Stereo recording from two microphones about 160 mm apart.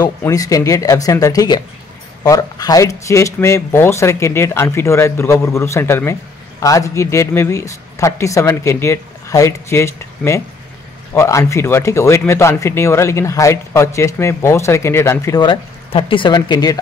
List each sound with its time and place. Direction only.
0.2 s speech: 20° left (ahead or behind)
15.4 s speech: 35° left (ahead or behind)